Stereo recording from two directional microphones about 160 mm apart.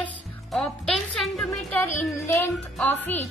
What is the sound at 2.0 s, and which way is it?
Music, 15° left (ahead or behind).